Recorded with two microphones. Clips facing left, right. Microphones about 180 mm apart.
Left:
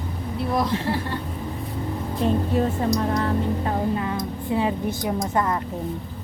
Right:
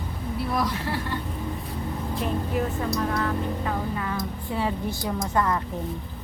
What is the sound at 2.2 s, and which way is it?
Speech, 30° left (ahead or behind).